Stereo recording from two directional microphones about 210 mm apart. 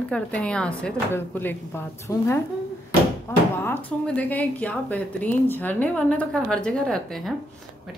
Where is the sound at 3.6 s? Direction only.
10° left (ahead or behind).